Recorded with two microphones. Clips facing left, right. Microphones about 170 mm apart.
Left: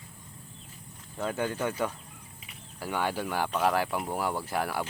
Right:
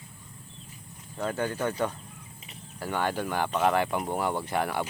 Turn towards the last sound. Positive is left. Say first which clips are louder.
# right 2 dB
turn(degrees=0)  # may be behind; listen again after turning